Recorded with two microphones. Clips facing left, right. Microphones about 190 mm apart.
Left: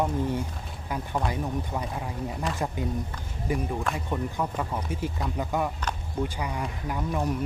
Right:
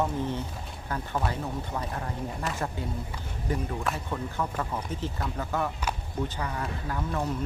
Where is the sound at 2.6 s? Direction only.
15° left (ahead or behind).